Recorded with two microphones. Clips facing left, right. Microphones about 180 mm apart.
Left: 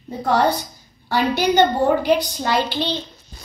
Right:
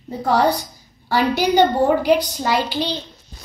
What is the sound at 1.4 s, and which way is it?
A woman's voice, centre (ahead or behind).